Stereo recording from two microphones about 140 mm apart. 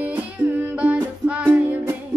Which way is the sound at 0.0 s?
10° right (ahead or behind).